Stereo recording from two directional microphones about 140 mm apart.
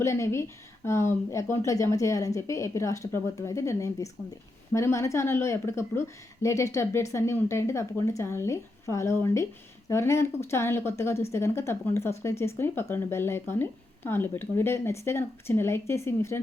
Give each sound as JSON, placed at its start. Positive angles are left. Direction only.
{"t": 0.0, "sound": "a woman's voice", "side_deg": 20}